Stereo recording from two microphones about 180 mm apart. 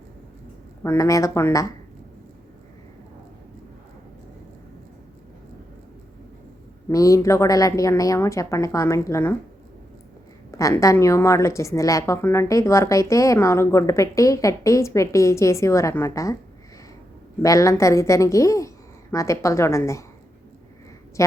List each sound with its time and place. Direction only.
0.8 s a woman's voice: 15° left (ahead or behind)
6.8 s a woman's voice: 20° left (ahead or behind)
10.5 s a woman's voice: 20° left (ahead or behind)
17.4 s a woman's voice: 20° left (ahead or behind)
21.2 s a woman's voice: 15° left (ahead or behind)